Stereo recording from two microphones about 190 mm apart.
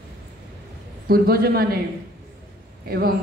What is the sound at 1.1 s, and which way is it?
Speech, 55° right (ahead or behind).